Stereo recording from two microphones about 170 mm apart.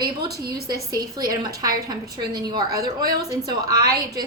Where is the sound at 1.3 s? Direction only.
20° right (ahead or behind).